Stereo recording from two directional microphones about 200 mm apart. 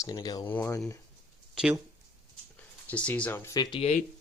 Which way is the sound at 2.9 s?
5° left (ahead or behind).